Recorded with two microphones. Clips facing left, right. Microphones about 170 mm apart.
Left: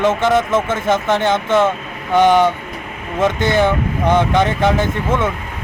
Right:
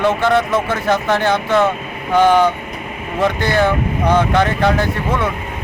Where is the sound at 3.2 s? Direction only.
20° left (ahead or behind).